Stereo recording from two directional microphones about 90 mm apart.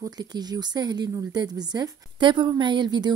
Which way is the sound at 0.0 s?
50° right (ahead or behind).